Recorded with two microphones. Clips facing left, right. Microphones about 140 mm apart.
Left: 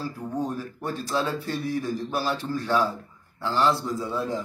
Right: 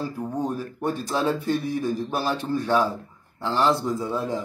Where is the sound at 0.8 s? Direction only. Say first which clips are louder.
Right 3 dB; 20° right (ahead or behind).